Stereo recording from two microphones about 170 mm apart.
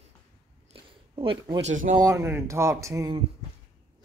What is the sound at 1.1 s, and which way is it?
Speech, 30° right (ahead or behind).